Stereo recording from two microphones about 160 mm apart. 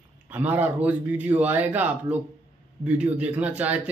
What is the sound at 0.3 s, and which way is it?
Speech, 10° right (ahead or behind).